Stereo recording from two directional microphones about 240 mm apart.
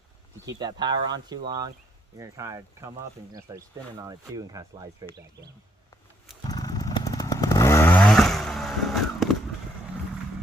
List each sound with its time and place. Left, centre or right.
0.5 s speech: centre
6.4 s chainsaw: centre